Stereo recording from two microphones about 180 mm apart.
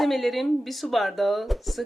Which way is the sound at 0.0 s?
Centre (ahead or behind).